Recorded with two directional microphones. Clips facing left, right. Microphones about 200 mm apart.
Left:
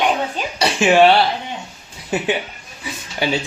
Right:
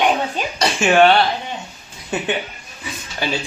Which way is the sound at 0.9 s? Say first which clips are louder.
Left 1 dB; 5° left (ahead or behind).